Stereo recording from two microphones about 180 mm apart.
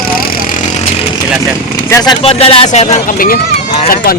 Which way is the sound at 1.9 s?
25° left (ahead or behind).